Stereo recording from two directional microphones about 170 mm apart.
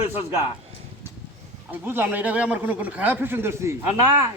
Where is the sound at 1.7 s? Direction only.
10° right (ahead or behind).